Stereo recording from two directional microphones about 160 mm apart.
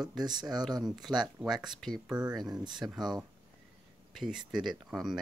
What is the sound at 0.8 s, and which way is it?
Speech, centre (ahead or behind).